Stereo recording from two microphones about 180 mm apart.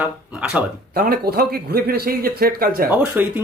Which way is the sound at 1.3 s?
60° right (ahead or behind).